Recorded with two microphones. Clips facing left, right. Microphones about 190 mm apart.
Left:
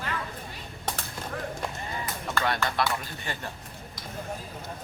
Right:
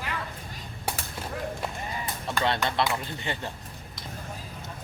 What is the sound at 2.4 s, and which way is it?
Speech, 20° right (ahead or behind).